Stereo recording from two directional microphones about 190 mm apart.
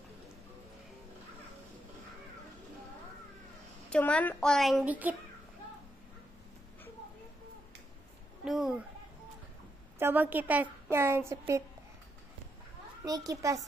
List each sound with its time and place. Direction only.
3.9 s a woman's voice: 5° left (ahead or behind)
8.5 s a sound: centre (ahead or behind)
9.9 s a woman's voice: 10° right (ahead or behind)
13.0 s a woman's voice: 20° right (ahead or behind)